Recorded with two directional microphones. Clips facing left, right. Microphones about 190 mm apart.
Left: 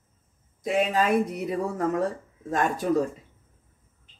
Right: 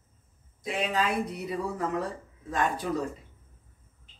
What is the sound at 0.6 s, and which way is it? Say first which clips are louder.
Speech: left 5 dB; 45° left (ahead or behind).